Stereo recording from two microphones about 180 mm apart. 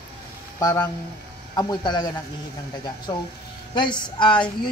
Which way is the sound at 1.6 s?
25° left (ahead or behind).